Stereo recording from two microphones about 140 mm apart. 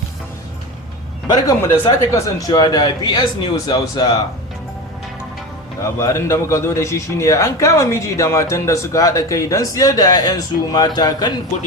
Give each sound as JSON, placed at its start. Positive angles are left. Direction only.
{"t": 1.3, "sound": "a man's voice", "side_deg": 25}
{"t": 5.8, "sound": "a man's voice", "side_deg": 20}